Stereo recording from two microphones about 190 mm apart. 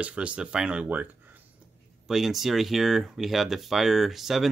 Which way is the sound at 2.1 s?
Centre (ahead or behind).